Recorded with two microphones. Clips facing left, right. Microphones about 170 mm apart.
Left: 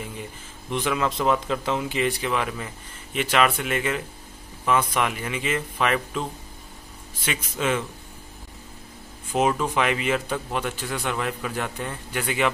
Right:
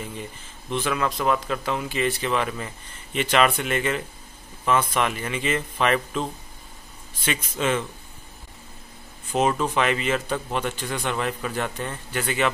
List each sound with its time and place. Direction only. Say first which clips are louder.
0.7 s a man's voice: even; 15° left (ahead or behind)
7.2 s a man's voice: right 1 dB; 10° left (ahead or behind)
9.3 s a man's voice: even; 10° left (ahead or behind)